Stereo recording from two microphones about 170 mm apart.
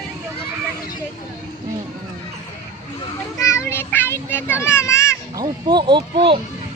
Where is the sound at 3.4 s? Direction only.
15° left (ahead or behind).